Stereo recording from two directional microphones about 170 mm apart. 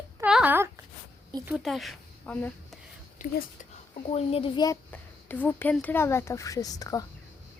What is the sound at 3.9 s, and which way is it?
Speech, 35° left (ahead or behind).